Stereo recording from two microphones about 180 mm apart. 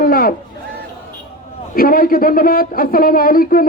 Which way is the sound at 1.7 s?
55° left (ahead or behind).